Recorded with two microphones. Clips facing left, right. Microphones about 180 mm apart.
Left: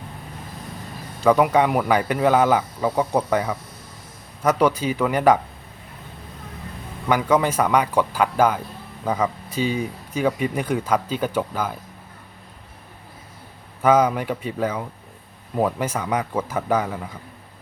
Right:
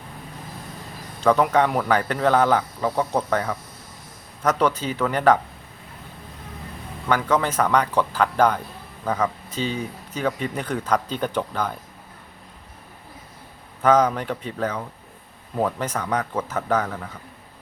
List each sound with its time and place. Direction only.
1.2 s speech: 10° left (ahead or behind)
7.1 s speech: 10° left (ahead or behind)
13.8 s speech: 10° left (ahead or behind)